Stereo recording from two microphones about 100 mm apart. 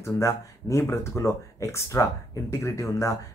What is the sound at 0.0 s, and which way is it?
Speech, 30° left (ahead or behind).